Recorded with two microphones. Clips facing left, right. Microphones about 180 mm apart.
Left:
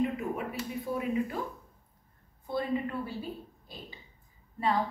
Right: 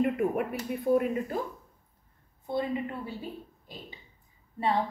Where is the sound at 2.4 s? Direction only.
25° right (ahead or behind).